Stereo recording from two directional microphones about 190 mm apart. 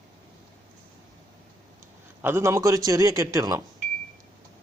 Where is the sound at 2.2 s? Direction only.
15° right (ahead or behind).